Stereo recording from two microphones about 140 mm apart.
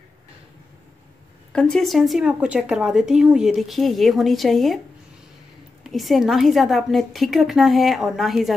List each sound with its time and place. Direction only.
1.5 s a woman's voice: 5° left (ahead or behind)
5.9 s a woman's voice: centre (ahead or behind)